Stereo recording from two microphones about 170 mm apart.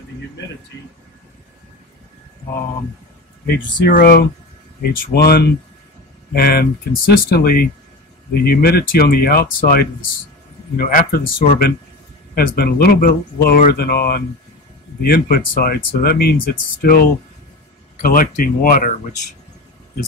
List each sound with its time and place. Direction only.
3.4 s speech: 70° left (ahead or behind); by 18.9 s 55° left (ahead or behind)